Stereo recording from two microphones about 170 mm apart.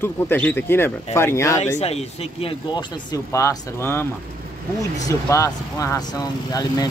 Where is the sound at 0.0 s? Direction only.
10° left (ahead or behind).